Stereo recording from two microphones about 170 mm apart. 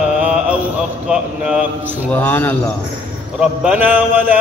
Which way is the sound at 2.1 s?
10° left (ahead or behind).